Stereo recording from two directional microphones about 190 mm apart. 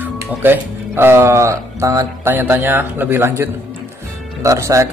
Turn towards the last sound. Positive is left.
turn(degrees=-15)  # may be behind; listen again after turning